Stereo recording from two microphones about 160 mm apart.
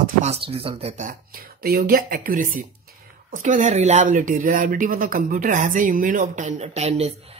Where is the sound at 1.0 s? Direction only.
65° right (ahead or behind).